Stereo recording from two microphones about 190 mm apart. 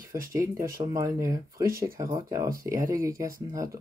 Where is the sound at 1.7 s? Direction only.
50° right (ahead or behind).